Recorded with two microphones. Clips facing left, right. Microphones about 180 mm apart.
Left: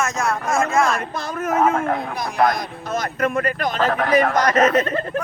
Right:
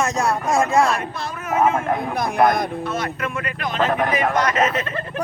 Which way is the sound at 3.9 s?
15° right (ahead or behind).